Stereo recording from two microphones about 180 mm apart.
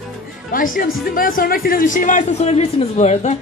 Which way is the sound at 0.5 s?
50° left (ahead or behind).